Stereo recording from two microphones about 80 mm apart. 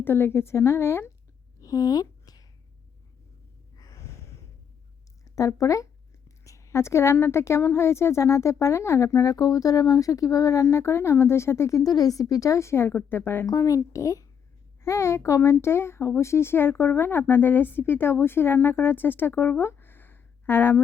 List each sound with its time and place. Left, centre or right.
0.0 s speech: left
1.6 s a sound: left
3.8 s snort: left
5.3 s speech: left
11.8 s a woman's voice: left
13.4 s a woman's voice: left